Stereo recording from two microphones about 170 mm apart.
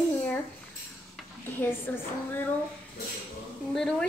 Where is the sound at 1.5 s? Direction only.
10° left (ahead or behind).